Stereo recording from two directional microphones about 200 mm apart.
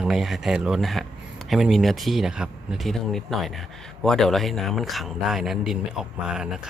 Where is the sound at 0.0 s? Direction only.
Centre (ahead or behind).